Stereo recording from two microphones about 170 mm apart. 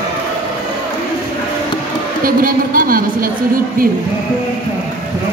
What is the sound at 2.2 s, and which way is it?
A woman's voice, 55° right (ahead or behind).